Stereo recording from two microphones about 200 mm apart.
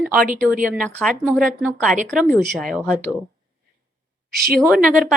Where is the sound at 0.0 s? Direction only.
Centre (ahead or behind).